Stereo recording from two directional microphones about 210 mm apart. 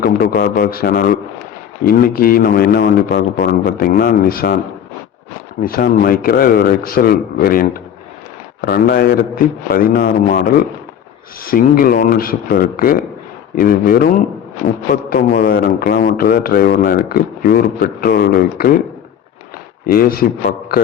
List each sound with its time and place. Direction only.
0.0 s a man's voice: 45° left (ahead or behind)
5.6 s a man's voice: 45° left (ahead or behind)
19.8 s a man's voice: 45° left (ahead or behind)